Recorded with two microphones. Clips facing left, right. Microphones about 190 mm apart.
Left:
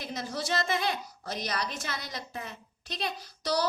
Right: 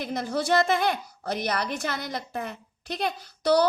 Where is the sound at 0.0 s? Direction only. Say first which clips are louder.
Right 7 dB; 55° right (ahead or behind).